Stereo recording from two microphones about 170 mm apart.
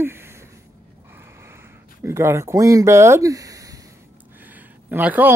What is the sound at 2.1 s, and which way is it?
Speech, 15° right (ahead or behind).